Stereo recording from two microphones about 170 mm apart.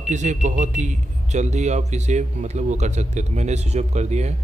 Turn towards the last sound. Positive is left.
turn(degrees=-40)  # may be behind; listen again after turning